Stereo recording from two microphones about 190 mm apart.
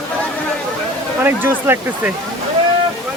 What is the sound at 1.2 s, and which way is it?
Speech, 10° right (ahead or behind).